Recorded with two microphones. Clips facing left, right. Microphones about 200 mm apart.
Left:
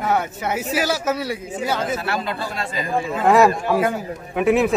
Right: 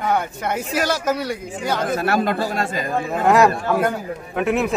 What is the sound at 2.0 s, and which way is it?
A man's voice, 45° right (ahead or behind).